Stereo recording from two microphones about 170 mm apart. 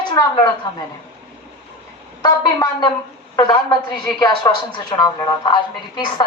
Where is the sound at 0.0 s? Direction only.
25° left (ahead or behind).